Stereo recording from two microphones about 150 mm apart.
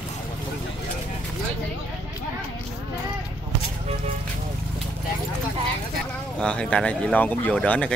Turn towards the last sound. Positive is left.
turn(degrees=10)  # may be behind; listen again after turning